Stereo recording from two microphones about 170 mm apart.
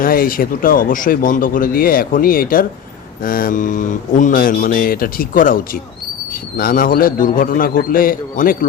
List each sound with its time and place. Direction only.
0.0 s speech: 60° left (ahead or behind)
6.6 s speech: 60° left (ahead or behind)